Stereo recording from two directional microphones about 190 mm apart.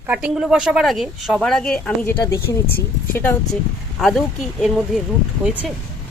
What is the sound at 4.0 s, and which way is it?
Speech, centre (ahead or behind).